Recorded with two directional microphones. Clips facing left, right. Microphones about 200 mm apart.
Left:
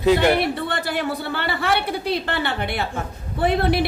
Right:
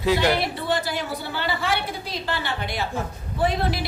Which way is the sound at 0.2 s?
55° left (ahead or behind).